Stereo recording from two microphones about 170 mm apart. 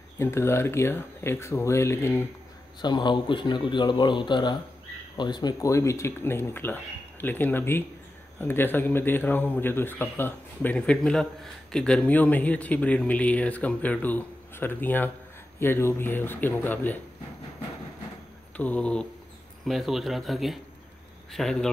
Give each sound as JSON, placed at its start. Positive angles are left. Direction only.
{"t": 0.2, "sound": "a man's voice", "side_deg": 15}
{"t": 2.8, "sound": "a man's voice", "side_deg": 25}
{"t": 18.6, "sound": "a man's voice", "side_deg": 10}